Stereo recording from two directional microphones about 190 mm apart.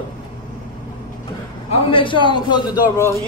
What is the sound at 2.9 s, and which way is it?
Speech, 15° left (ahead or behind).